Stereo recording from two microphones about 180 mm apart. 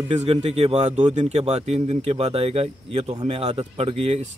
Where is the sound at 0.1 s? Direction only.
35° right (ahead or behind).